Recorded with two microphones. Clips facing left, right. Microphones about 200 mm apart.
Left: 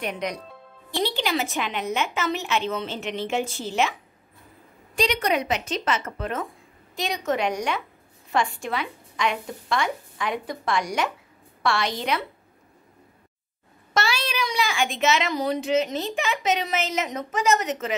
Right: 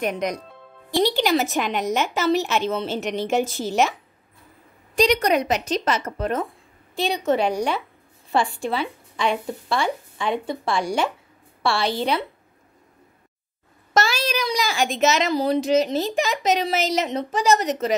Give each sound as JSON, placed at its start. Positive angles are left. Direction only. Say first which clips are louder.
{"t": 0.0, "sound": "a woman's voice", "louder": "right 5 dB", "side_deg": -45}
{"t": 4.9, "sound": "speech", "louder": "right 5 dB", "side_deg": -40}
{"t": 13.9, "sound": "speech", "louder": "right 4 dB", "side_deg": -40}